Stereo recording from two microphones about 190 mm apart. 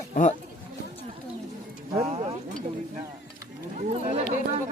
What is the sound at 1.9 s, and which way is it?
Speech, 35° right (ahead or behind).